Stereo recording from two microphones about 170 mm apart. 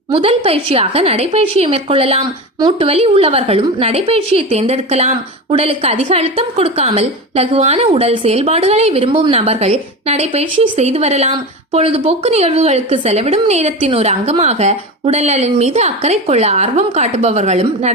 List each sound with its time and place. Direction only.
0.1 s a woman's voice: 35° right (ahead or behind)